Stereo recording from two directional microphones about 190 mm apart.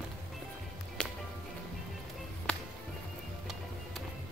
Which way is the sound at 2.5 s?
5° left (ahead or behind).